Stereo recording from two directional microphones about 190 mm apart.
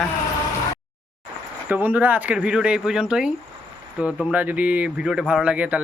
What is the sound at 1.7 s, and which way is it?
Speech, 10° right (ahead or behind).